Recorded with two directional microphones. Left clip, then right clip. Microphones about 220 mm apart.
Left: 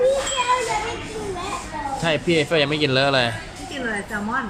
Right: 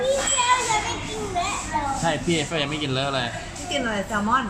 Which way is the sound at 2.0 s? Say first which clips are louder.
Left 4 dB; 25° left (ahead or behind).